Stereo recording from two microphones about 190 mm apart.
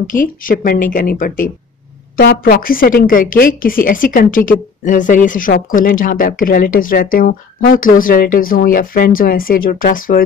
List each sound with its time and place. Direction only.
0.0 s speech: 45° left (ahead or behind)